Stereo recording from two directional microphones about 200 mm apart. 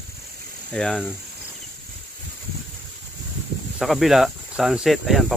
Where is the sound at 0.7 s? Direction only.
5° left (ahead or behind).